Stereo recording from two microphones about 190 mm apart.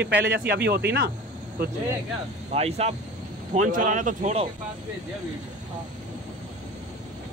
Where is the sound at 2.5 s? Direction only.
35° right (ahead or behind).